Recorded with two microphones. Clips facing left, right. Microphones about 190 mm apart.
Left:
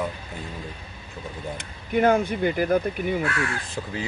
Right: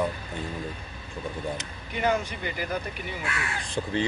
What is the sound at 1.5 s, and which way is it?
Speech, 50° left (ahead or behind).